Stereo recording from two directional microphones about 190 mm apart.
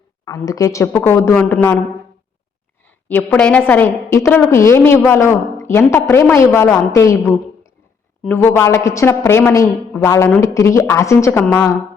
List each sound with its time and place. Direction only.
0.4 s a woman's voice: 15° left (ahead or behind)
3.1 s a woman's voice: 10° left (ahead or behind)
8.2 s a woman's voice: 10° left (ahead or behind)